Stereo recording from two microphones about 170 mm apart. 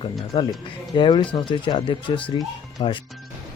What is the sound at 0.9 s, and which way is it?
Speech, 30° left (ahead or behind).